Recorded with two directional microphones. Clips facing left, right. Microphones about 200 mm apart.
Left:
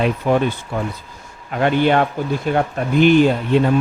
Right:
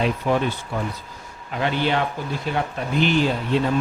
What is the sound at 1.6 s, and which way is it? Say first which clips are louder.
A man's voice: left 7 dB; 55° left (ahead or behind).